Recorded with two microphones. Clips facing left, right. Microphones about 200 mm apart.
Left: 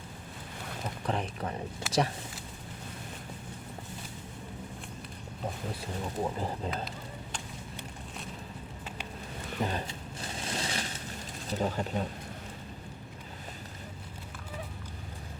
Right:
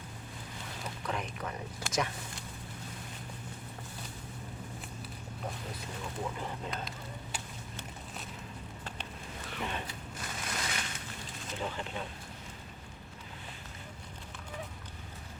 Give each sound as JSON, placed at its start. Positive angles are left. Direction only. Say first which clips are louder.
{"t": 1.0, "sound": "speech", "louder": "left 4 dB", "side_deg": 35}
{"t": 6.0, "sound": "speech", "louder": "left 5 dB", "side_deg": 35}
{"t": 9.6, "sound": "speech", "louder": "left 6 dB", "side_deg": 35}
{"t": 9.8, "sound": "a sound", "louder": "left 2 dB", "side_deg": 30}
{"t": 11.4, "sound": "speech", "louder": "left 7 dB", "side_deg": 40}